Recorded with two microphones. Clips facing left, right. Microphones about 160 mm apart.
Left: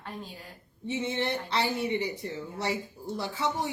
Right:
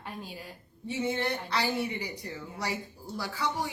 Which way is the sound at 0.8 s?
25° left (ahead or behind).